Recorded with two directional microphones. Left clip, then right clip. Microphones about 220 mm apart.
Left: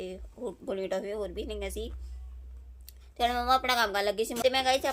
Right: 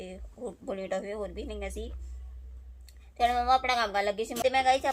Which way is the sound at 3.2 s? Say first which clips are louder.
Right 1 dB; 15° left (ahead or behind).